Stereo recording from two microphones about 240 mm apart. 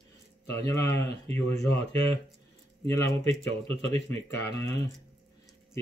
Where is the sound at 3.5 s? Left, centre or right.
Right.